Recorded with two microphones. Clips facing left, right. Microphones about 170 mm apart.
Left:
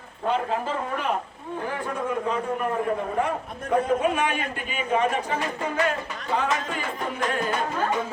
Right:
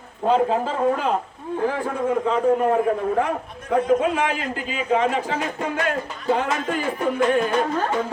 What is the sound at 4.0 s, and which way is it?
A man's voice, 90° right.